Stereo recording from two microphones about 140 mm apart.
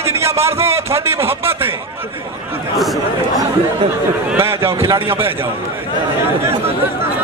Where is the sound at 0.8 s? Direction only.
20° right (ahead or behind).